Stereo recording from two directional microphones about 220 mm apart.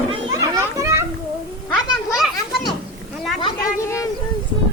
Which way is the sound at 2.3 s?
20° left (ahead or behind).